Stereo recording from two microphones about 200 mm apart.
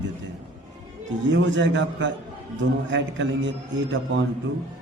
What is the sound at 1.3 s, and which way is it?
A man's voice, 65° right (ahead or behind).